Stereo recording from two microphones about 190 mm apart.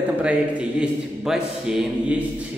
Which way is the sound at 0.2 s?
5° right (ahead or behind).